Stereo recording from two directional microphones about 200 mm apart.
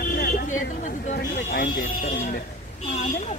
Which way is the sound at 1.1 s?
55° left (ahead or behind).